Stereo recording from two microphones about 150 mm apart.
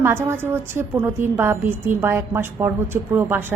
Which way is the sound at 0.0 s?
15° right (ahead or behind).